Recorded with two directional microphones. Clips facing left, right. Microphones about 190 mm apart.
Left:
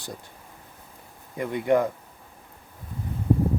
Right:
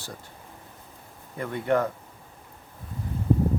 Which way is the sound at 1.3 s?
15° left (ahead or behind).